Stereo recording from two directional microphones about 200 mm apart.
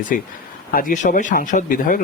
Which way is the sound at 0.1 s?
45° left (ahead or behind).